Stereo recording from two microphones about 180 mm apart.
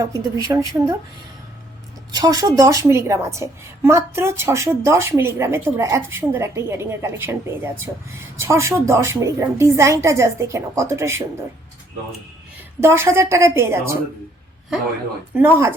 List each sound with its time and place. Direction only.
0.4 s speech: 20° right (ahead or behind)
2.1 s a woman's voice: 20° right (ahead or behind)
12.8 s a woman's voice: 15° right (ahead or behind)
15.4 s a woman's voice: 10° right (ahead or behind)